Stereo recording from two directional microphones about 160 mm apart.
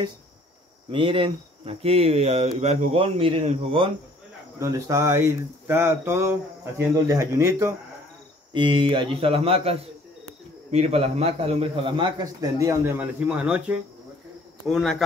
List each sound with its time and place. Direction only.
0.9 s a man's voice: 35° right (ahead or behind)
4.6 s speech: 20° right (ahead or behind)
8.5 s a man's voice: 30° right (ahead or behind); by 15.0 s centre (ahead or behind)